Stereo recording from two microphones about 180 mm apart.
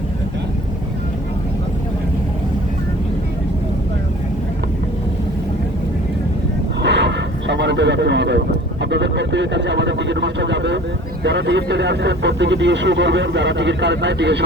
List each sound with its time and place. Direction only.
6.8 s vehicle: 75° right (ahead or behind)
8.8 s a sound: 80° right
11.2 s speech: 75° right (ahead or behind)